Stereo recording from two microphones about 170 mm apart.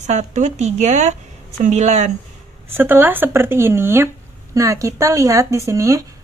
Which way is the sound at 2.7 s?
10° right (ahead or behind).